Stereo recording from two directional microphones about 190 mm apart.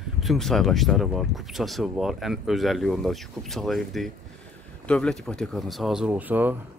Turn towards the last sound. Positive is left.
turn(degrees=-10)  # may be behind; listen again after turning